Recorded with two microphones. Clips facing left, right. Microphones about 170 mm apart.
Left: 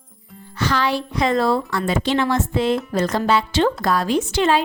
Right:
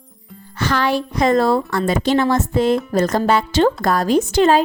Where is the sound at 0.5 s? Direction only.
50° right (ahead or behind).